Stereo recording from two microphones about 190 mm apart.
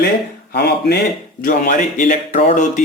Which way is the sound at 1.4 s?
45° left (ahead or behind).